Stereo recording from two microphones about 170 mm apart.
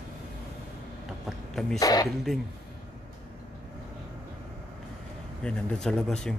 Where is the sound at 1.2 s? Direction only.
Centre (ahead or behind).